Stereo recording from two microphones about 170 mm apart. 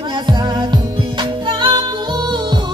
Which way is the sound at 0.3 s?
25° right (ahead or behind).